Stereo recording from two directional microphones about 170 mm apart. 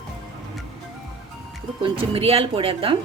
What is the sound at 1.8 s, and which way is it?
Speech, 35° right (ahead or behind).